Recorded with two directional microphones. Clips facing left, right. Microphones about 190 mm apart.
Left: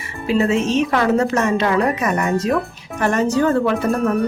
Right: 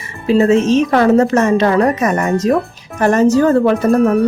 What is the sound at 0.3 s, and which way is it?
Speech, 40° right (ahead or behind).